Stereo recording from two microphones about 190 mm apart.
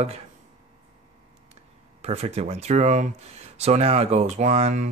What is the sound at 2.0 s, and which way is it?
Speech, 35° right (ahead or behind).